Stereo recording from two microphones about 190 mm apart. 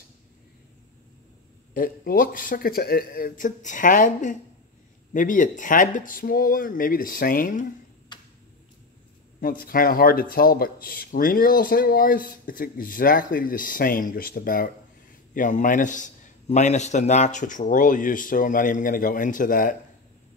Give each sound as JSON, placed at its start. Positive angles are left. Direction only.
{"t": 1.7, "sound": "speech", "side_deg": 50}
{"t": 9.4, "sound": "speech", "side_deg": 50}